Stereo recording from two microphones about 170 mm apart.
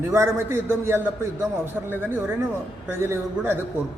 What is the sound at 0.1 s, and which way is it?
A man's voice, 15° right (ahead or behind).